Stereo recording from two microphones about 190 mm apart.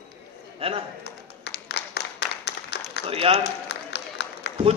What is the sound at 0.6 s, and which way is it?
Speech, 30° right (ahead or behind).